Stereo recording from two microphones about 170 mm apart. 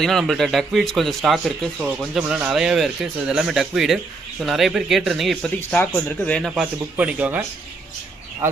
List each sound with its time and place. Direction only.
0.0 s speech: centre (ahead or behind)
7.0 s speech: 10° right (ahead or behind)